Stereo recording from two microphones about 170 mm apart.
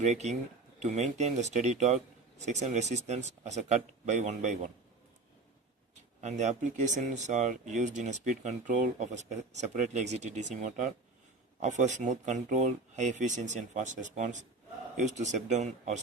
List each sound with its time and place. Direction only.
0.0 s speech: 40° right (ahead or behind)
6.2 s speech: 45° right (ahead or behind)